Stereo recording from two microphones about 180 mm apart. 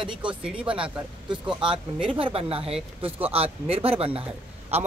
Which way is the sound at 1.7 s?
30° right (ahead or behind).